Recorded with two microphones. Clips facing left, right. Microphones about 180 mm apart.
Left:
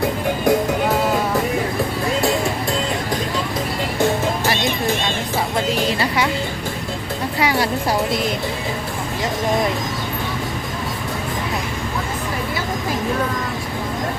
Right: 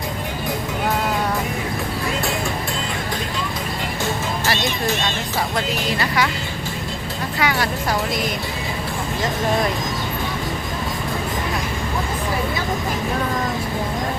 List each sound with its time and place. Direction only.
7.3 s speech: 30° left (ahead or behind)